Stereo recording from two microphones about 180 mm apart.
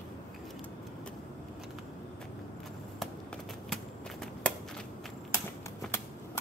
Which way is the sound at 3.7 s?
5° left (ahead or behind).